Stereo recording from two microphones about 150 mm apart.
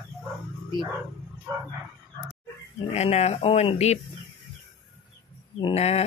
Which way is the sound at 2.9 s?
45° left (ahead or behind).